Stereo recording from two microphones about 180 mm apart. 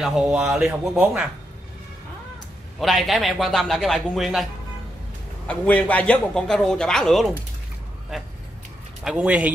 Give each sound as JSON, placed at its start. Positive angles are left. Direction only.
{"t": 0.0, "sound": "a man's voice", "side_deg": -5}
{"t": 2.8, "sound": "a man's voice", "side_deg": 0}
{"t": 5.5, "sound": "a man's voice", "side_deg": 10}